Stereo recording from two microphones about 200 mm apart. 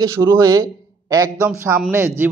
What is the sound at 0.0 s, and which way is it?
A man's voice, 15° right (ahead or behind).